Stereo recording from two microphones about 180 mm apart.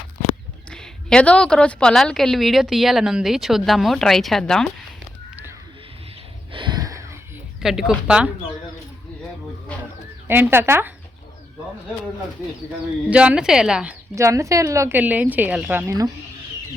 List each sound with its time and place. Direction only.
0.7 s a woman's voice: 5° left (ahead or behind)
6.5 s a sound: 25° right (ahead or behind)
7.6 s a woman's voice: centre (ahead or behind)
10.2 s a woman's voice: 10° right (ahead or behind)
13.1 s a woman's voice: 5° right (ahead or behind)
14.2 s a woman's voice: 15° right (ahead or behind)